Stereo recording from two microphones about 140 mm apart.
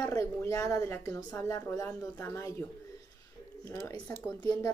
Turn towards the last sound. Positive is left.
turn(degrees=15)  # may be behind; listen again after turning